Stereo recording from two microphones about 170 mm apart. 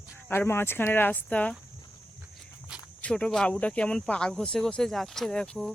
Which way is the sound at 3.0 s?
5° left (ahead or behind).